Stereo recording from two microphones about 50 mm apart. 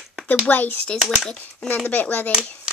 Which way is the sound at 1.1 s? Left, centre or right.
Centre.